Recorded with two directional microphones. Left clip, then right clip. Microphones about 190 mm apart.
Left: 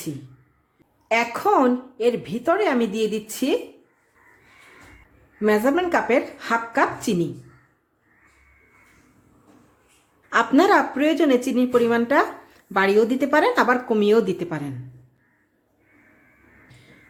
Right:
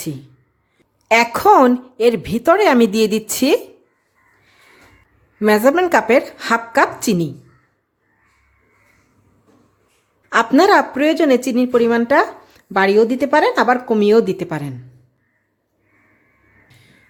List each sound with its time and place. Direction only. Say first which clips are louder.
1.0 s a woman's voice: right 9 dB; 40° right (ahead or behind)
5.4 s a woman's voice: right 6 dB; 35° right (ahead or behind)
10.2 s a woman's voice: right 5 dB; 30° right (ahead or behind)